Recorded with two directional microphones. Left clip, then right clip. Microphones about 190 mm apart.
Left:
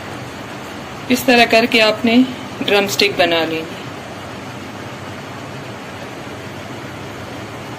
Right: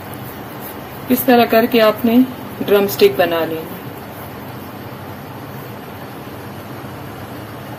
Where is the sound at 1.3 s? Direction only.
40° right (ahead or behind).